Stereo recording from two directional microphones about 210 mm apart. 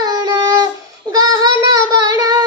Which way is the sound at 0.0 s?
20° right (ahead or behind).